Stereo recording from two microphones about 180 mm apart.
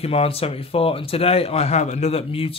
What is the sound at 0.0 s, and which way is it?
A man's voice, 35° left (ahead or behind).